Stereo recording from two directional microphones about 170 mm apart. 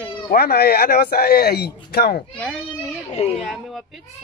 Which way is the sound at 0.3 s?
65° left (ahead or behind).